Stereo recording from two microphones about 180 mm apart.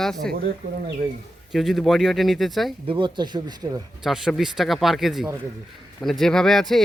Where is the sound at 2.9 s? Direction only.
25° right (ahead or behind).